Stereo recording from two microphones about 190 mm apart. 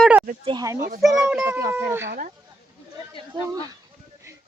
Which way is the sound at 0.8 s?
55° right (ahead or behind).